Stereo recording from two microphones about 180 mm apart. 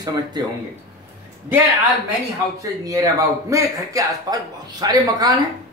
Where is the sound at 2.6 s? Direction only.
20° right (ahead or behind).